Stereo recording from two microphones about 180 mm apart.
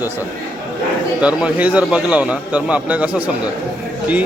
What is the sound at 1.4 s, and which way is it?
A man's voice, 10° right (ahead or behind).